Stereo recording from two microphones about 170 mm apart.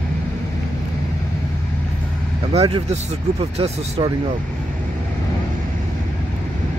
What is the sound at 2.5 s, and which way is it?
Speech, 40° right (ahead or behind).